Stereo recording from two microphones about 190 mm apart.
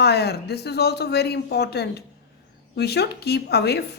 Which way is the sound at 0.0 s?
60° left (ahead or behind).